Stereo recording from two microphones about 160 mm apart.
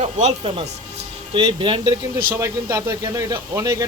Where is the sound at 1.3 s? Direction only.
30° right (ahead or behind).